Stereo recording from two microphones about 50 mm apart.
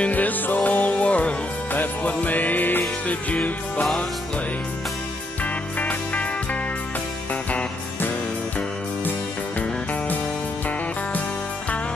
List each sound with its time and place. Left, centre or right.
0.0 s music: left
5.4 s music: left